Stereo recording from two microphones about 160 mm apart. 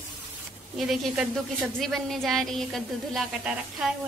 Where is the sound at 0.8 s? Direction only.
Centre (ahead or behind).